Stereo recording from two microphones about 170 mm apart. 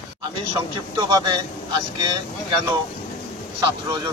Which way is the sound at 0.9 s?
25° right (ahead or behind).